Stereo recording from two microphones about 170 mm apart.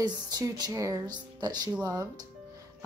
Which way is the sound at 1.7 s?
10° right (ahead or behind).